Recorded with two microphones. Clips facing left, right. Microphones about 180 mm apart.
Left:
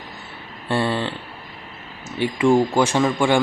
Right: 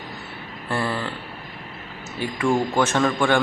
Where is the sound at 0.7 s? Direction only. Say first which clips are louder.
Left 4 dB; 25° left (ahead or behind).